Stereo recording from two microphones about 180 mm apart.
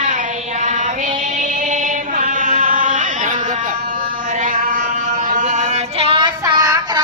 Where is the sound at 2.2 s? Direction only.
45° right (ahead or behind).